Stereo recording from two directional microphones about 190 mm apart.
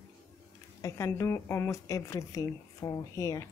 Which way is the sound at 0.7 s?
15° left (ahead or behind).